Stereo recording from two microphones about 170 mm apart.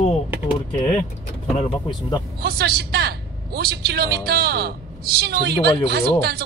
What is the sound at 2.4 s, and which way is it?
A man's voice, 70° right (ahead or behind).